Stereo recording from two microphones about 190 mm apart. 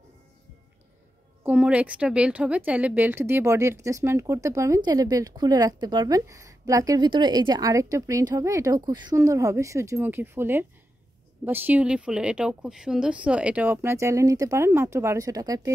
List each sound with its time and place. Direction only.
1.4 s a woman's voice: 10° right (ahead or behind)